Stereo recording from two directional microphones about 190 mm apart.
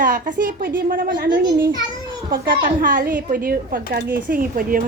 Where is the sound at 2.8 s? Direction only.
45° right (ahead or behind).